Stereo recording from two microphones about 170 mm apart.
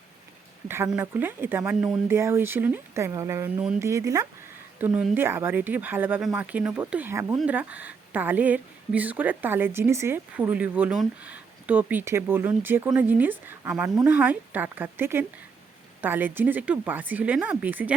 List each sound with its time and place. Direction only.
0.7 s speech: 15° right (ahead or behind)